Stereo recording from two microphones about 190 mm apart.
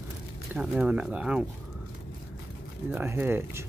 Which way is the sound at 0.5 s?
5° right (ahead or behind).